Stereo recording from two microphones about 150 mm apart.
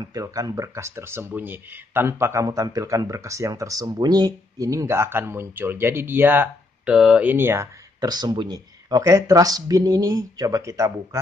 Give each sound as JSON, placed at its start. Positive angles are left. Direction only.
{"t": 0.0, "sound": "speech", "side_deg": -20}